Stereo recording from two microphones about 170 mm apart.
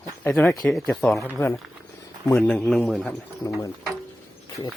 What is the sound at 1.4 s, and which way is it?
A man's voice, 15° left (ahead or behind).